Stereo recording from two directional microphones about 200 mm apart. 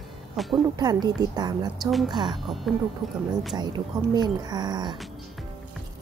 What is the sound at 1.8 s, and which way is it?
Speech, centre (ahead or behind).